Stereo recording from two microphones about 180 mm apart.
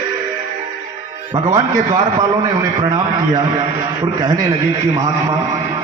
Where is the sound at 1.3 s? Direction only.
25° right (ahead or behind).